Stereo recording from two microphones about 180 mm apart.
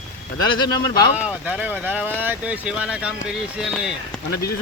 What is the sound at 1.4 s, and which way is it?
Speech, 10° right (ahead or behind).